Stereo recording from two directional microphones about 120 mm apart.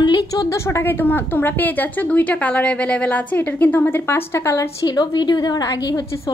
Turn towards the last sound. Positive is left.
turn(degrees=35)  # may be behind; listen again after turning